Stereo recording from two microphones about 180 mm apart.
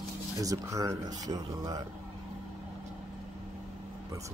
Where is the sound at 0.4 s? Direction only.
20° right (ahead or behind).